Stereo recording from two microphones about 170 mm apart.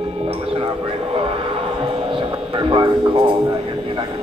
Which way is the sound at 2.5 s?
30° right (ahead or behind).